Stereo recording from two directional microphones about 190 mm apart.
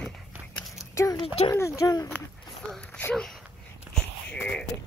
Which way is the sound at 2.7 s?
5° left (ahead or behind).